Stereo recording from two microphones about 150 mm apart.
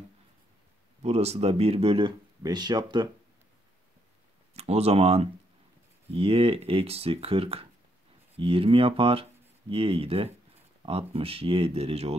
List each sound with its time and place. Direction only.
1.0 s speech: 45° right (ahead or behind); by 3.1 s 30° right (ahead or behind)
4.6 s speech: 45° right (ahead or behind)